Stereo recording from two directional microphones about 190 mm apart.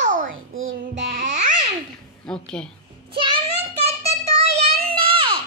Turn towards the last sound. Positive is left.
turn(degrees=-25)  # may be behind; listen again after turning